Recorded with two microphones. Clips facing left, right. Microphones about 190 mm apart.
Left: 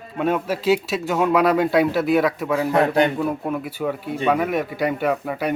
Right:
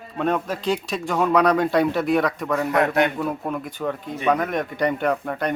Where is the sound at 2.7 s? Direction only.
30° left (ahead or behind).